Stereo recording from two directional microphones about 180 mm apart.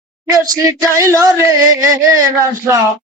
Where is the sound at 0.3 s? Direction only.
20° right (ahead or behind).